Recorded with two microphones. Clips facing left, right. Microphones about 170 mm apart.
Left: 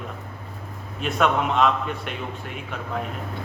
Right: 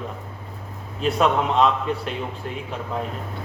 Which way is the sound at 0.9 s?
35° right (ahead or behind).